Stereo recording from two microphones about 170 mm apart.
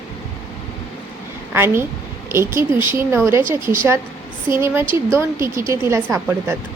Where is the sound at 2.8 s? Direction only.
15° right (ahead or behind).